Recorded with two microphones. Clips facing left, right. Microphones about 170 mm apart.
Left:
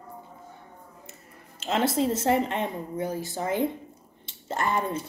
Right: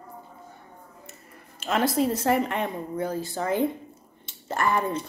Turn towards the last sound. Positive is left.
turn(degrees=20)  # may be behind; listen again after turning